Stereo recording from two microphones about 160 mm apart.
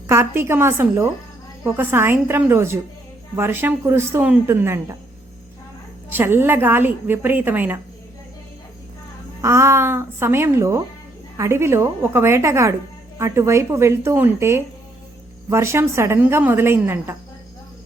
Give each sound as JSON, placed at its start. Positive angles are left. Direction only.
{"t": 0.1, "sound": "a woman's voice", "side_deg": -15}
{"t": 6.1, "sound": "a woman's voice", "side_deg": -15}
{"t": 9.4, "sound": "a woman's voice", "side_deg": -20}